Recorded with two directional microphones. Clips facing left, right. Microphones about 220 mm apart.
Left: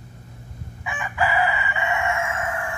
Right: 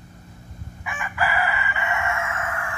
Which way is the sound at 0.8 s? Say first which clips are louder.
Left 2 dB; 20° left (ahead or behind).